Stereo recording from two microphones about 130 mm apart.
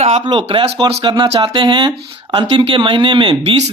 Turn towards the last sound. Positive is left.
turn(degrees=-40)  # may be behind; listen again after turning